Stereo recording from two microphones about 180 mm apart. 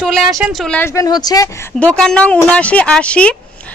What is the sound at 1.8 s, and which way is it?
A woman's voice, 5° left (ahead or behind).